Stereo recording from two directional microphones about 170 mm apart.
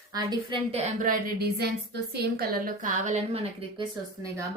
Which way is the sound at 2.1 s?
65° right (ahead or behind).